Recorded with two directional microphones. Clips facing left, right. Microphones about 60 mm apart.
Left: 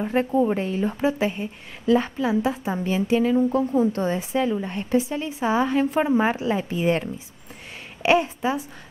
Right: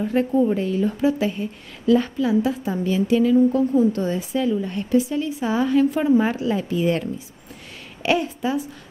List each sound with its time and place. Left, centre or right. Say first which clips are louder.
0.0 s a woman's voice: right 2 dB; left